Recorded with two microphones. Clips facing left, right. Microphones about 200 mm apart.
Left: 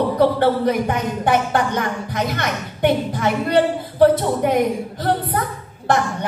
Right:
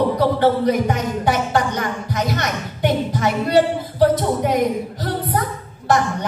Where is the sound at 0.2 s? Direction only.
55° left (ahead or behind).